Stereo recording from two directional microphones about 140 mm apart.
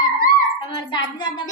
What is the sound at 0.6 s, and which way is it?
Music, 35° left (ahead or behind).